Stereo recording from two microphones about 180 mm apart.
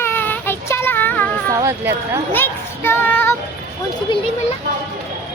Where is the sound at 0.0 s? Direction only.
10° left (ahead or behind).